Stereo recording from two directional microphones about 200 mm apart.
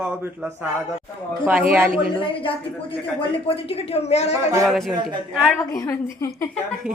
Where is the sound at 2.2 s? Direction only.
25° left (ahead or behind).